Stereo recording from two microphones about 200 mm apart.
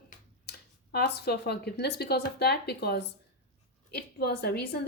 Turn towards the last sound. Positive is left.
turn(degrees=55)  # may be behind; listen again after turning